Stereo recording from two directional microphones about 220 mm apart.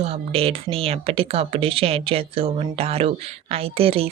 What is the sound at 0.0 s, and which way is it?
A woman's voice, 25° right (ahead or behind).